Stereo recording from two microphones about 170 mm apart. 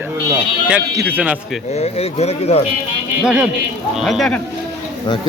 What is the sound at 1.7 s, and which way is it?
Speech, 40° left (ahead or behind).